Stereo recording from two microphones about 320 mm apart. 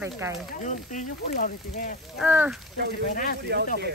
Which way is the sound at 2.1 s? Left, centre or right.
Centre.